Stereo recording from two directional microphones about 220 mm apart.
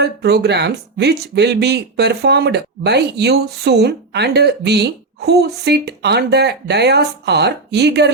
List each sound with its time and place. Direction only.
0.0 s speech: 50° right (ahead or behind)